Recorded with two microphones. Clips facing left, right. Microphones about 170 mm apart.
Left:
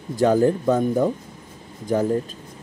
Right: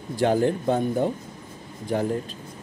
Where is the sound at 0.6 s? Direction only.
90° left.